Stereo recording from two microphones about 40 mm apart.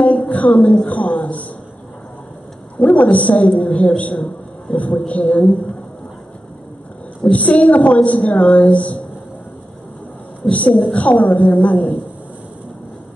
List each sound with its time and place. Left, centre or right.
0.0 s a sound: left
0.8 s a man's voice: left
2.8 s a woman's voice: left
7.2 s a woman's voice: left
10.5 s a woman's voice: left